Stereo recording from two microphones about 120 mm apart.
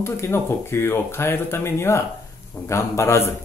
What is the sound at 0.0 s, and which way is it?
Speech, 20° left (ahead or behind).